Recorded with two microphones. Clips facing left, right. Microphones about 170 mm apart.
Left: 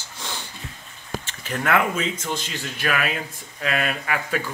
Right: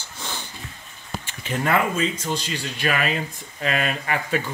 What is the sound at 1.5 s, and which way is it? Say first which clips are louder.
Speech: even; 15° right (ahead or behind).